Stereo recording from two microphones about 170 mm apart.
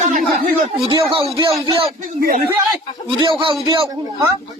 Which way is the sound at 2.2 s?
65° right (ahead or behind).